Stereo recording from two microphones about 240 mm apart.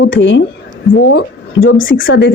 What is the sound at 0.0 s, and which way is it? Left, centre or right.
Speech, left.